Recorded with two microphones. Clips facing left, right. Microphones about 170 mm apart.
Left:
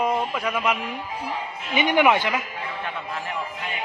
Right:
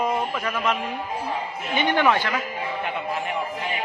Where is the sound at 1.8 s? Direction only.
15° left (ahead or behind).